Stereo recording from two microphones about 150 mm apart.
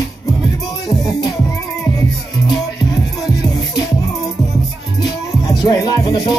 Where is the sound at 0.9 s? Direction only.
25° left (ahead or behind).